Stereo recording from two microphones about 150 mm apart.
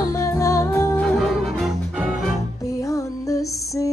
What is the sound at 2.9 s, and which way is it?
Female singing, 20° left (ahead or behind).